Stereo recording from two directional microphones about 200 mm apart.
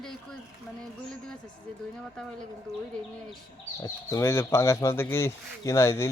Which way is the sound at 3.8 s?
15° left (ahead or behind).